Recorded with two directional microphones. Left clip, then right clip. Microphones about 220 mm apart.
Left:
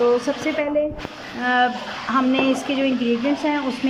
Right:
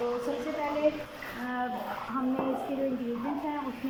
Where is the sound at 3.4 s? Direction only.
50° left (ahead or behind).